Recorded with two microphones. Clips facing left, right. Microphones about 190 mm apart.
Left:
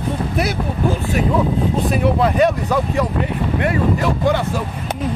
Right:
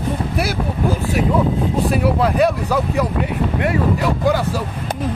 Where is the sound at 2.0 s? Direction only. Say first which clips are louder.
Left 2 dB; 5° right (ahead or behind).